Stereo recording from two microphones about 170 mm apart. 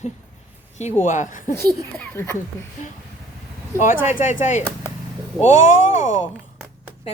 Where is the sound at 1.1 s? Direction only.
50° left (ahead or behind).